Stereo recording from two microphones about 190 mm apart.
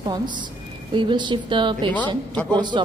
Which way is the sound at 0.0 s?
25° right (ahead or behind).